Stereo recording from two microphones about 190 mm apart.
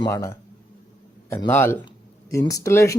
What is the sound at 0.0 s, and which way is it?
Speech, 15° left (ahead or behind).